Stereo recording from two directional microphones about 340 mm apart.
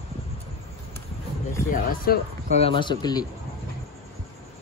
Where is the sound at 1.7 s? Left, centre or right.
Left.